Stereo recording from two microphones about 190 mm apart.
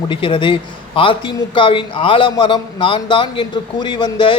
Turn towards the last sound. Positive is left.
turn(degrees=25)  # may be behind; listen again after turning